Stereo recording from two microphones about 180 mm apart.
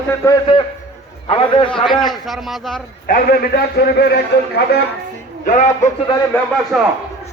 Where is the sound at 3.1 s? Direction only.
60° left (ahead or behind).